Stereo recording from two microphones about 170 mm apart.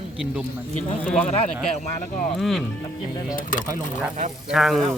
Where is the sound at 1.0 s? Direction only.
5° left (ahead or behind).